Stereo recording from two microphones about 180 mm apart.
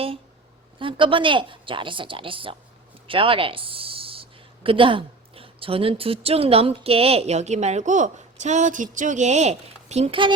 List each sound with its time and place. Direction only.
0.8 s speech: 30° right (ahead or behind)